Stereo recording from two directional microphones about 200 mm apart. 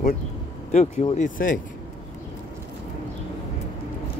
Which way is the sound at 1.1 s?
40° left (ahead or behind).